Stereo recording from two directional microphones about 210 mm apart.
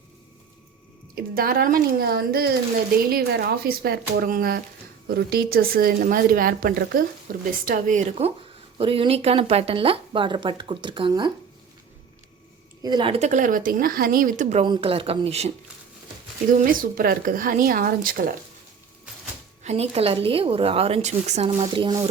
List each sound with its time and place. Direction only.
1.1 s speech: 45° right (ahead or behind)
8.8 s speech: 25° right (ahead or behind)
12.8 s speech: 20° right (ahead or behind); by 14.6 s 40° right (ahead or behind)
14.6 s speech: 25° right (ahead or behind); by 18.3 s 45° right (ahead or behind)
19.6 s speech: 30° right (ahead or behind)